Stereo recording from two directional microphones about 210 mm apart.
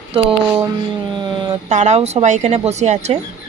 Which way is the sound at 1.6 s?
35° right (ahead or behind).